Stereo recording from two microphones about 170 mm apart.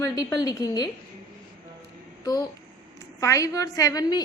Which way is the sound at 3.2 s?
20° left (ahead or behind).